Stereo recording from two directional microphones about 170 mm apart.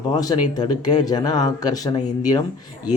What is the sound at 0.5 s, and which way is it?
Speech, 25° left (ahead or behind).